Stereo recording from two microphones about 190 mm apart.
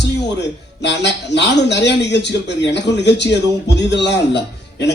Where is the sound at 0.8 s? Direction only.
65° left (ahead or behind).